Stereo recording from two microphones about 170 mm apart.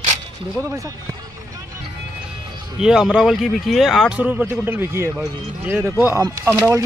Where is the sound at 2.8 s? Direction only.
5° right (ahead or behind).